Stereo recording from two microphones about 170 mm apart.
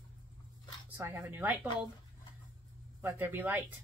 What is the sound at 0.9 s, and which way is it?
Speech, 15° right (ahead or behind).